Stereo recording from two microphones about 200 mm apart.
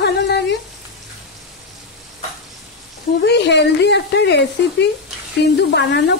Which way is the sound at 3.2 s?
60° left (ahead or behind).